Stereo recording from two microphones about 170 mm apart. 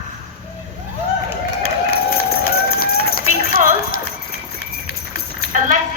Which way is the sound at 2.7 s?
65° left (ahead or behind).